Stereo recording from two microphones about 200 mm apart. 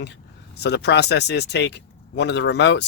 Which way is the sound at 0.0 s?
60° left (ahead or behind).